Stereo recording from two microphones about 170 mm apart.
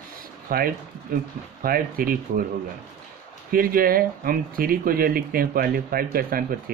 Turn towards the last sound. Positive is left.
turn(degrees=-60)  # may be behind; listen again after turning